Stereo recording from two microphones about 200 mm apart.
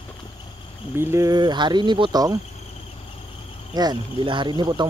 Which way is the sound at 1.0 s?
15° right (ahead or behind).